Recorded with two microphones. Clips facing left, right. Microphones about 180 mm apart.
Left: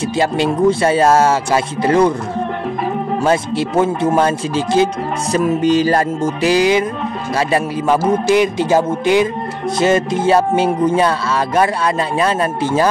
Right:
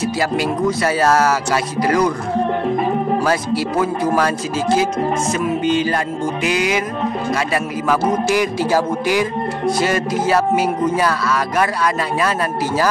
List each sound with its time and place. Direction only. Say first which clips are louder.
0.0 s music: left 3 dB; 25° left (ahead or behind)
3.3 s music: left 2 dB; 25° left (ahead or behind)
5.3 s music: left 8 dB; 40° left (ahead or behind)